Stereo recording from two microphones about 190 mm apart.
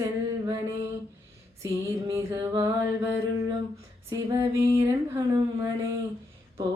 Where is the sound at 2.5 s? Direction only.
20° right (ahead or behind).